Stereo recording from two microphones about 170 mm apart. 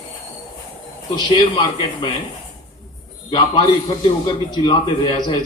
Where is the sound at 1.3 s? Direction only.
25° left (ahead or behind).